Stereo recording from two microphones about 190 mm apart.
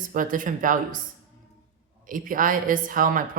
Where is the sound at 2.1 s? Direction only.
45° right (ahead or behind).